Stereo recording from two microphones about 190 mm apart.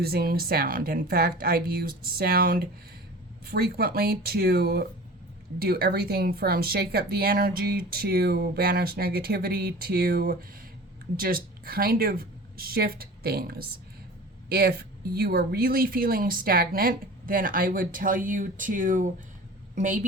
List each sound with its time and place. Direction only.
0.0 s a woman's voice: 55° right (ahead or behind)